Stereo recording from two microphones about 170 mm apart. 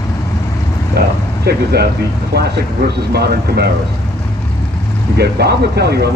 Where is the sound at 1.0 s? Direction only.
75° right (ahead or behind).